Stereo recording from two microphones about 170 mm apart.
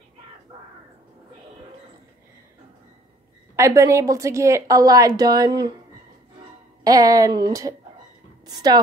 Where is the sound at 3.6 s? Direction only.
15° right (ahead or behind).